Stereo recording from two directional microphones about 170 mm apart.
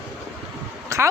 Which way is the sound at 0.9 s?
20° right (ahead or behind).